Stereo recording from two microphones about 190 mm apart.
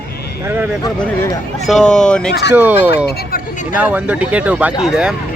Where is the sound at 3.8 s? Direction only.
10° right (ahead or behind).